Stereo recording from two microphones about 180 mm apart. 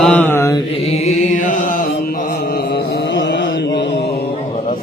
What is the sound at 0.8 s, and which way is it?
Music, 35° left (ahead or behind).